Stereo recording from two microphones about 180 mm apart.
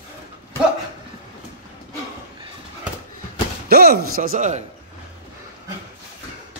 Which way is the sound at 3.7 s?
60° right (ahead or behind).